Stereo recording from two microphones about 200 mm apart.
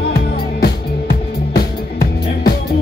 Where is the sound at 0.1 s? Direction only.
50° left (ahead or behind).